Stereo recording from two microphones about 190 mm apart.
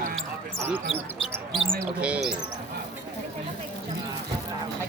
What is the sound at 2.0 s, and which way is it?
Speech, 5° right (ahead or behind).